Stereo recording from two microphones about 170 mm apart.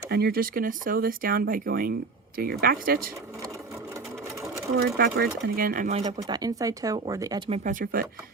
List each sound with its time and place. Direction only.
0.1 s speech: 70° right (ahead or behind)
4.9 s speech: 65° right (ahead or behind)
6.0 s speech: 25° right (ahead or behind)
7.6 s speech: 50° right (ahead or behind)